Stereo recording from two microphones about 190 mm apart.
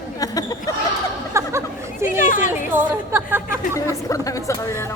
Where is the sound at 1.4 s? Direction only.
15° right (ahead or behind).